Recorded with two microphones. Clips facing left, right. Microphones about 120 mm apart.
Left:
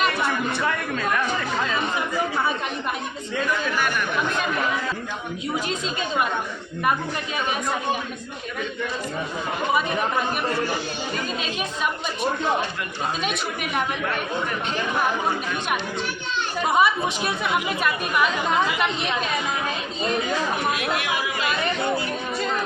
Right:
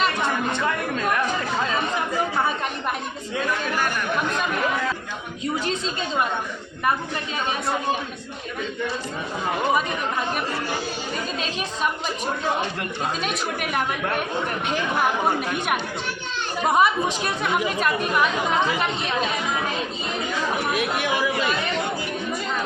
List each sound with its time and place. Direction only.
0.0 s a sound: 25° right (ahead or behind)
13.2 s a woman's voice: centre (ahead or behind)
15.4 s speech: 50° right (ahead or behind)
16.7 s a woman's voice: centre (ahead or behind)